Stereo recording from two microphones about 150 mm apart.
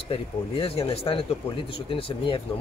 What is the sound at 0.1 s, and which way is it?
Speech, 40° left (ahead or behind).